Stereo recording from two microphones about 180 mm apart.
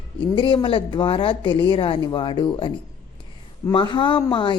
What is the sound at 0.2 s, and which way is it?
A woman's voice, 25° left (ahead or behind).